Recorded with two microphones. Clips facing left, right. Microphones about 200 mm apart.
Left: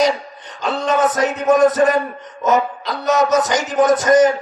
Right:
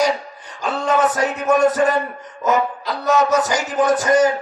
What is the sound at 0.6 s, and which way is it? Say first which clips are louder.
Music: left 1 dB; 20° left (ahead or behind).